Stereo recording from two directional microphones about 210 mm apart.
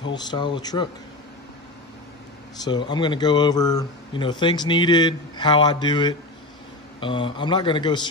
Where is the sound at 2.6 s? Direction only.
20° left (ahead or behind).